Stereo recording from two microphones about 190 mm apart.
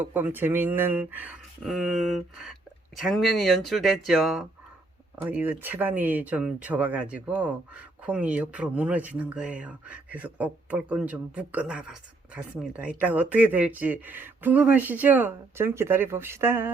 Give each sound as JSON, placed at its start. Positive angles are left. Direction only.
{"t": 0.0, "sound": "speech", "side_deg": -10}